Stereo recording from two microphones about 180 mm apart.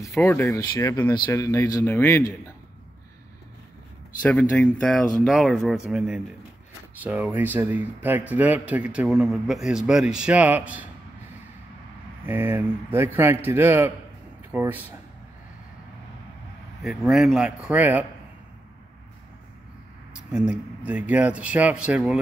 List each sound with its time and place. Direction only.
0.0 s speech: 15° left (ahead or behind)
4.2 s speech: 5° left (ahead or behind)
12.3 s speech: 10° right (ahead or behind)
16.8 s speech: centre (ahead or behind)
20.2 s speech: 5° right (ahead or behind)